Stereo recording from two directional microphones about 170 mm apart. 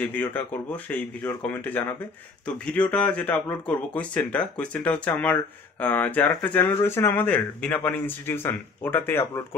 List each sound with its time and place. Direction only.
0.0 s speech: 10° left (ahead or behind)